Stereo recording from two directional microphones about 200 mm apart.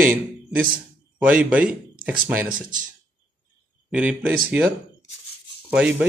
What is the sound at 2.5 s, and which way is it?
Speech, 40° right (ahead or behind).